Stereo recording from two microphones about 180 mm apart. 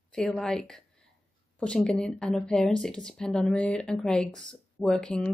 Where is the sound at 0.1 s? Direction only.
5° left (ahead or behind).